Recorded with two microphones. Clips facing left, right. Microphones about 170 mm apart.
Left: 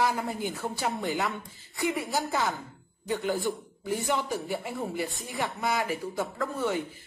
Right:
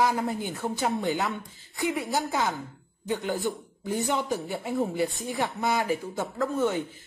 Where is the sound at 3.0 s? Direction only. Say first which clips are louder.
Even; 15° right (ahead or behind).